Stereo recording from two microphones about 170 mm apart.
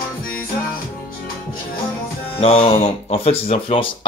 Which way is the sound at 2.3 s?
35° left (ahead or behind).